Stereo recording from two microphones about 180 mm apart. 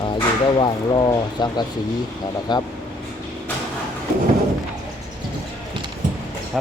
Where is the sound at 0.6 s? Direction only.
25° left (ahead or behind).